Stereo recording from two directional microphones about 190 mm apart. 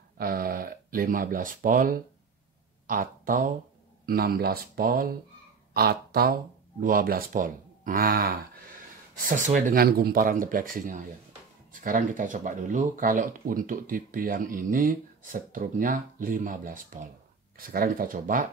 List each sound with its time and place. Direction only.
0.2 s speech: 50° right (ahead or behind)